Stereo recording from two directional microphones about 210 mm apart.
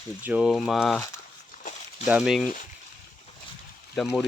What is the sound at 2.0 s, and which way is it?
Speech, 5° right (ahead or behind).